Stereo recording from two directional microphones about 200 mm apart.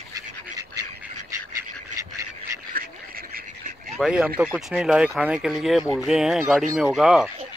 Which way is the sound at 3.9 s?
5° right (ahead or behind).